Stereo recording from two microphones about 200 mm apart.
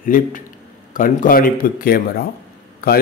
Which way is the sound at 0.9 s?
40° left (ahead or behind).